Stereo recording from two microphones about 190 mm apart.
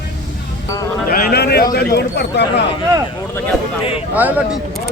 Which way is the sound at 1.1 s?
55° left (ahead or behind).